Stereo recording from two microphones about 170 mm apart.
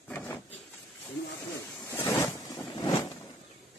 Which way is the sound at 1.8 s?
15° left (ahead or behind).